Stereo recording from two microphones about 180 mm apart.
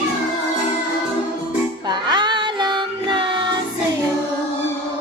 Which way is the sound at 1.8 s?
25° right (ahead or behind).